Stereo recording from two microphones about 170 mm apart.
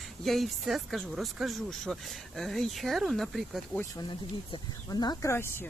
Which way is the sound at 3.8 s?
25° left (ahead or behind).